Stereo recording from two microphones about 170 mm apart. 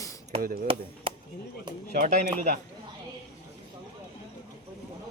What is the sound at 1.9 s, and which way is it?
Speech, 60° right (ahead or behind).